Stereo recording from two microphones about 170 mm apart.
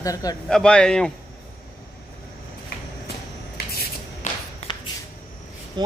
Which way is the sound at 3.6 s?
65° left (ahead or behind).